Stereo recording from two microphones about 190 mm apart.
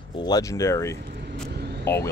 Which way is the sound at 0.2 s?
20° left (ahead or behind).